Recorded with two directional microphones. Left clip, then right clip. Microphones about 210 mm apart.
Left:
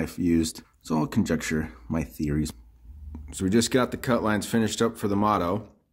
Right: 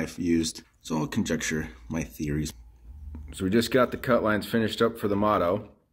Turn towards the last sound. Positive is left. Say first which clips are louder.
# even
turn(degrees=35)  # may be behind; listen again after turning